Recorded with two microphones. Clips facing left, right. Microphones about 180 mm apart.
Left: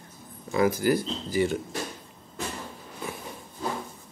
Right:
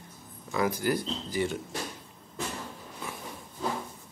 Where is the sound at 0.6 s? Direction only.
5° left (ahead or behind).